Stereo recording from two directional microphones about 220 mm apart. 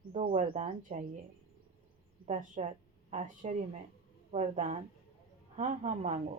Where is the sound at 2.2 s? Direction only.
30° right (ahead or behind).